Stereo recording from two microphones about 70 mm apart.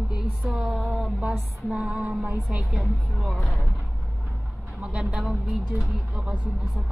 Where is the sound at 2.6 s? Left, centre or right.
Centre.